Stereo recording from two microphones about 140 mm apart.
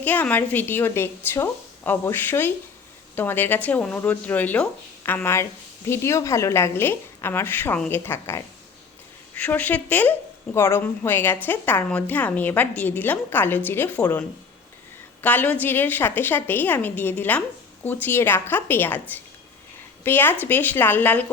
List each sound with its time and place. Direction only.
0.0 s speech: 10° left (ahead or behind)
15.2 s speech: 10° left (ahead or behind)